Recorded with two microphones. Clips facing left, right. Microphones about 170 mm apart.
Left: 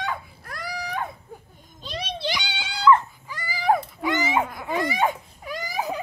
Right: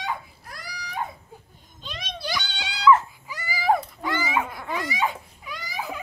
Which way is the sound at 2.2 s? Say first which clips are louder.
Right 1 dB; 15° left (ahead or behind).